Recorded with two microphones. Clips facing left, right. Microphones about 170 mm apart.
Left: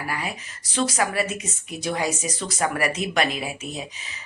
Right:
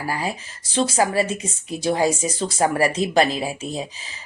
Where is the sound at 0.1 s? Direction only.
30° right (ahead or behind).